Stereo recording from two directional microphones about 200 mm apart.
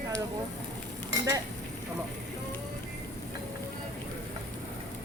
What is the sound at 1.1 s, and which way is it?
Dishes, 15° right (ahead or behind).